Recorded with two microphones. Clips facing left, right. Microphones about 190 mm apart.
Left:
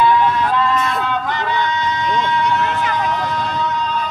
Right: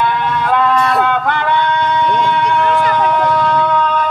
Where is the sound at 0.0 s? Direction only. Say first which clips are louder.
Left 2 dB; 60° right (ahead or behind).